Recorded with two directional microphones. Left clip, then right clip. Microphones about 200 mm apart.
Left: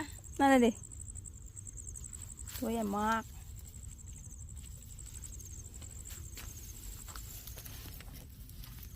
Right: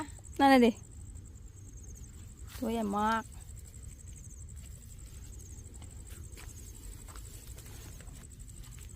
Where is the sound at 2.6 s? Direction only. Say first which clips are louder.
Right 2 dB; 5° right (ahead or behind).